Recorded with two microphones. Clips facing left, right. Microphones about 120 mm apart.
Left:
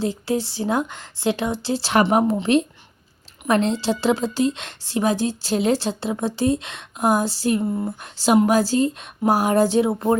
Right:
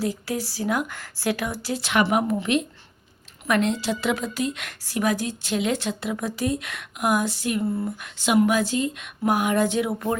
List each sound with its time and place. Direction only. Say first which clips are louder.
0.0 s a woman's voice: left 4 dB; 25° left (ahead or behind)